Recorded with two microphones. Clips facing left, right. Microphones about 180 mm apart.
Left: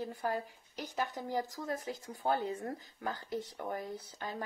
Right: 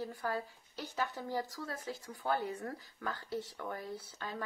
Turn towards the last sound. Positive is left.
turn(degrees=20)  # may be behind; listen again after turning